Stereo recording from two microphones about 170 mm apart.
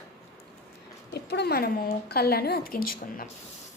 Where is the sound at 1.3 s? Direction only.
70° left (ahead or behind).